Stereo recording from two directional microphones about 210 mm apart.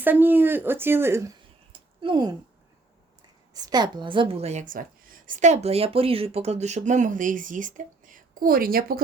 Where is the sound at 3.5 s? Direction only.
20° right (ahead or behind).